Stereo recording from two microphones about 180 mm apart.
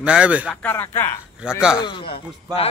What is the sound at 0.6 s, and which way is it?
Speech, 15° left (ahead or behind).